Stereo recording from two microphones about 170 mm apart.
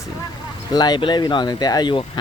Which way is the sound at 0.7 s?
25° left (ahead or behind).